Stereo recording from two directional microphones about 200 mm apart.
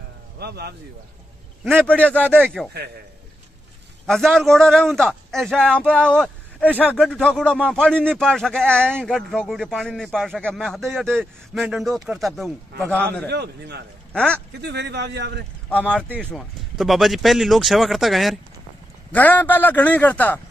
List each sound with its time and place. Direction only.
0.4 s speech: 55° right (ahead or behind)
1.6 s a man's voice: 10° right (ahead or behind)
1.9 s speech: 5° left (ahead or behind)
4.0 s a man's voice: centre (ahead or behind)
13.3 s a man's voice: 55° right (ahead or behind)
14.1 s a man's voice: 5° left (ahead or behind)
14.6 s a man's voice: 55° right (ahead or behind)
16.2 s a man's voice: 5° left (ahead or behind)